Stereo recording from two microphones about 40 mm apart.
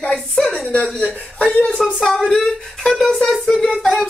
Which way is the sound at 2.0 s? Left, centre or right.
Centre.